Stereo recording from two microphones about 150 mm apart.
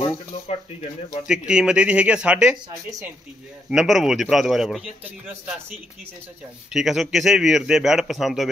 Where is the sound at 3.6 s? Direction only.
Centre (ahead or behind).